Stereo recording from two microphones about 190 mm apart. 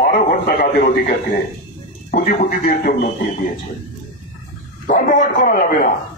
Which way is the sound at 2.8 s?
55° left (ahead or behind).